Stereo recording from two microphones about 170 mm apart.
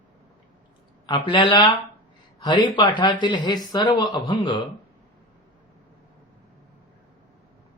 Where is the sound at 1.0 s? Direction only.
30° left (ahead or behind).